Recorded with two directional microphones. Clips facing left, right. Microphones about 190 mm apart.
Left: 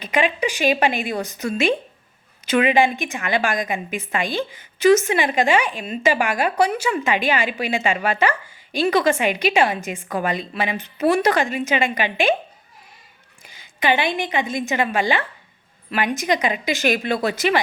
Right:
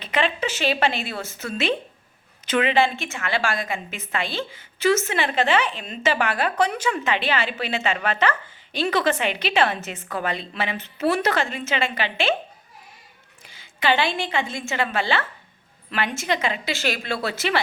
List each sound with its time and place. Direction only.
0.0 s a woman's voice: 10° left (ahead or behind)
13.4 s a sound: 15° left (ahead or behind)
14.5 s a woman's voice: 15° left (ahead or behind)